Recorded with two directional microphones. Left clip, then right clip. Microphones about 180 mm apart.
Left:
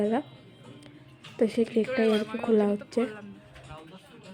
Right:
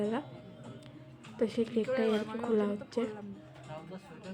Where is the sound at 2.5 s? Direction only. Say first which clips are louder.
Left 7 dB; 25° left (ahead or behind).